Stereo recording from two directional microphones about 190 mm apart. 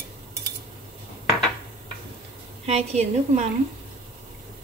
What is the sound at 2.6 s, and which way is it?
Speech, 35° right (ahead or behind).